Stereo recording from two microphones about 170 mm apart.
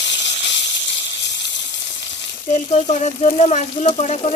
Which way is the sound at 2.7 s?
40° left (ahead or behind).